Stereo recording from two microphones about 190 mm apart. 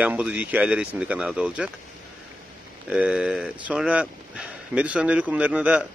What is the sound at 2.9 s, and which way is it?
Speech, 5° right (ahead or behind).